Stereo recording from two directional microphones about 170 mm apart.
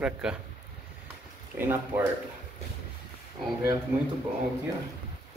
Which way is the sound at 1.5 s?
10° right (ahead or behind).